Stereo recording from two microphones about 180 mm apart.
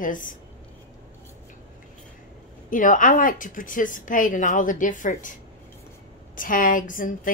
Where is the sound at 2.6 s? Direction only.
50° left (ahead or behind).